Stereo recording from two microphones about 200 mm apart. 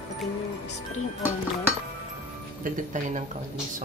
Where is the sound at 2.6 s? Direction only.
40° right (ahead or behind).